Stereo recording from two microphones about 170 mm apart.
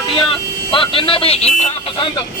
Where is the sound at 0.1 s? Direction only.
30° left (ahead or behind).